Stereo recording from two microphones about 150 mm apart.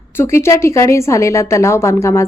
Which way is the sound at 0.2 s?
15° left (ahead or behind).